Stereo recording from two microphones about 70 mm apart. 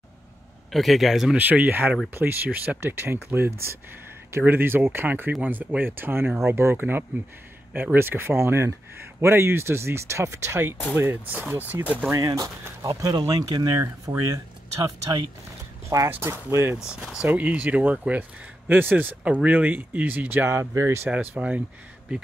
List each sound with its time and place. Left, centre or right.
0.7 s speech: centre
1.3 s speech: right
11.5 s speech: right
12.1 s speech: right
16.1 s speech: right
16.7 s speech: centre
17.2 s speech: right
21.1 s speech: right